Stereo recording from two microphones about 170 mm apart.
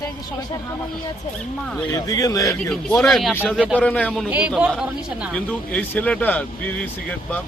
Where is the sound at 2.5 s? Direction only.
10° left (ahead or behind).